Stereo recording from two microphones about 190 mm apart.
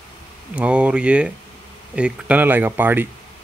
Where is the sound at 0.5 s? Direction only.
5° right (ahead or behind).